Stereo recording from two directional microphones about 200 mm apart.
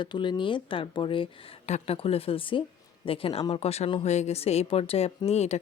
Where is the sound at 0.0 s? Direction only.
25° left (ahead or behind).